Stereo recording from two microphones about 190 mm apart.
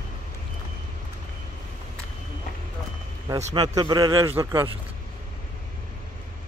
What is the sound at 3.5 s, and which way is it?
Speech, 20° right (ahead or behind).